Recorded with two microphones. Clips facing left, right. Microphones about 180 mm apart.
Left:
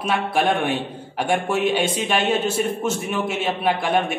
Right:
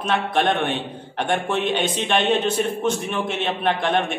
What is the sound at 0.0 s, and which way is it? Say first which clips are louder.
A man's voice: even; 10° left (ahead or behind).